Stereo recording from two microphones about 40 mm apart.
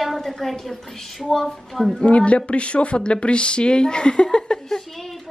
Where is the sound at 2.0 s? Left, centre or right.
Left.